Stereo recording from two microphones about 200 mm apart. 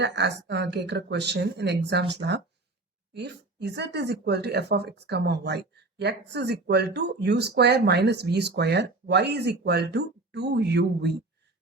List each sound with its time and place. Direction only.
0.0 s speech: 60° right (ahead or behind)